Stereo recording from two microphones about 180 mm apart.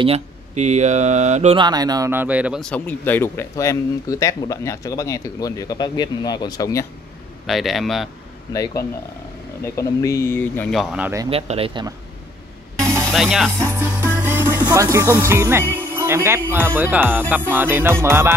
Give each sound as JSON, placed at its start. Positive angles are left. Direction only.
{"t": 0.0, "sound": "speech", "side_deg": -35}
{"t": 1.6, "sound": "speech", "side_deg": -20}
{"t": 2.6, "sound": "speech", "side_deg": 10}
{"t": 7.4, "sound": "speech", "side_deg": 0}
{"t": 9.6, "sound": "speech", "side_deg": 15}
{"t": 10.8, "sound": "speech", "side_deg": 0}
{"t": 11.2, "sound": "speech", "side_deg": -35}
{"t": 13.1, "sound": "speech", "side_deg": 0}
{"t": 13.7, "sound": "music", "side_deg": -15}
{"t": 14.7, "sound": "speech", "side_deg": -20}